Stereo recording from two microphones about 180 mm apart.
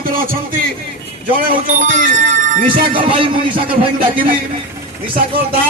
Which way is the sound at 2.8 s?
30° right (ahead or behind).